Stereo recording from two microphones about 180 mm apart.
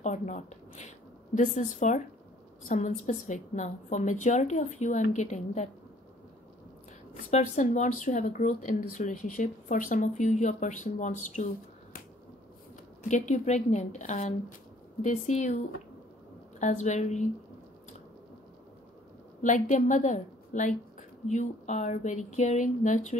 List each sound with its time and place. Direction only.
0.0 s a woman's voice: 40° left (ahead or behind)
7.2 s speech: 40° left (ahead or behind)
13.1 s a woman's voice: 40° left (ahead or behind)
16.5 s a woman's voice: 40° left (ahead or behind)
19.4 s a woman's voice: 45° left (ahead or behind)